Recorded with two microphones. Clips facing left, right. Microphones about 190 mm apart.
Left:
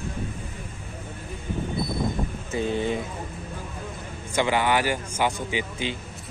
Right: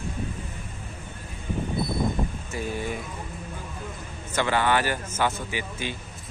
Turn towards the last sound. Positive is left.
turn(degrees=20)  # may be behind; listen again after turning